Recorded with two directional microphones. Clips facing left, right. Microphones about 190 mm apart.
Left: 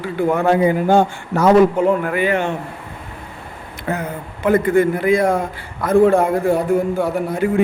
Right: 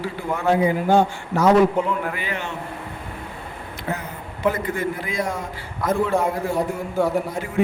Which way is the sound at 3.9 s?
55° left (ahead or behind).